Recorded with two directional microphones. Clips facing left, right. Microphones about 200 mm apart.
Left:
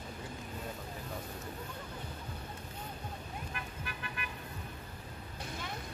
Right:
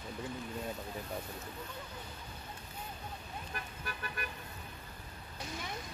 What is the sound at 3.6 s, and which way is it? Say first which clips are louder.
Toot: even; 40° right (ahead or behind).